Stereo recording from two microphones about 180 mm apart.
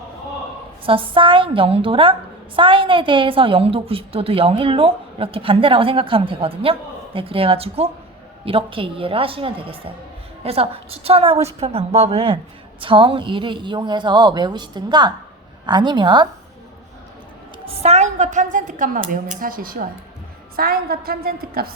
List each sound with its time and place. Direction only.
0.9 s a woman's voice: 30° right (ahead or behind)
17.7 s a woman's voice: 35° right (ahead or behind); by 21.7 s 55° right (ahead or behind)